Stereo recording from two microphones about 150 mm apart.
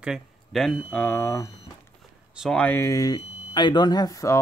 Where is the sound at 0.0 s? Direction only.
Centre (ahead or behind); by 1.5 s 15° left (ahead or behind).